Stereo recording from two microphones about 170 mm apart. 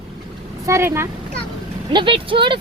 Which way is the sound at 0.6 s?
15° right (ahead or behind).